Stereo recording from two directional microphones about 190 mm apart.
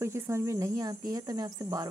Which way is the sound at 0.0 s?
15° right (ahead or behind).